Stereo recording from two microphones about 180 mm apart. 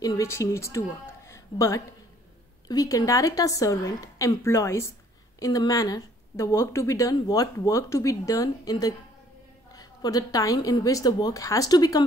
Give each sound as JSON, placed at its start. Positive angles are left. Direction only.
{"t": 0.0, "sound": "a woman's voice", "side_deg": 20}